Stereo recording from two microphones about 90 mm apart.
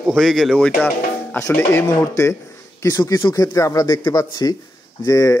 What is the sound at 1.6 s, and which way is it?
A man's voice, 30° left (ahead or behind).